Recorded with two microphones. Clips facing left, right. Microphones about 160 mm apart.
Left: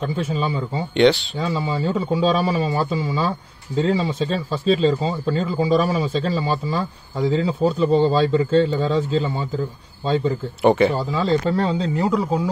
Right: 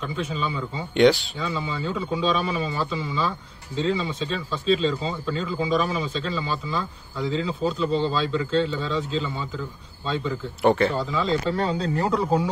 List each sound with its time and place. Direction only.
0.0 s speech: 45° left (ahead or behind)
0.9 s speech: 5° right (ahead or behind)
1.4 s a man's voice: 40° left (ahead or behind)
10.7 s a man's voice: 15° left (ahead or behind)
11.0 s a man's voice: 40° left (ahead or behind)
11.8 s a man's voice: 15° left (ahead or behind)